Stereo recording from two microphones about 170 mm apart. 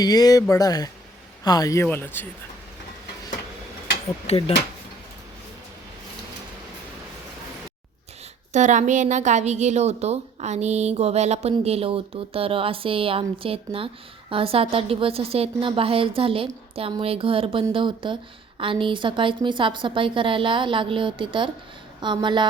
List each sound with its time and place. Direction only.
0.0 s speech: 25° left (ahead or behind)
4.3 s speech: 35° left (ahead or behind)
8.5 s a woman's voice: 45° right (ahead or behind); by 22.4 s 25° right (ahead or behind)